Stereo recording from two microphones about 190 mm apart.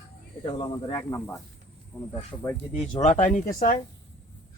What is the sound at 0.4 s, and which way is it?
Speech, 20° left (ahead or behind).